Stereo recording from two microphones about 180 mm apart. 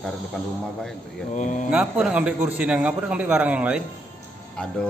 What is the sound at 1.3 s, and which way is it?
Speech, 45° left (ahead or behind).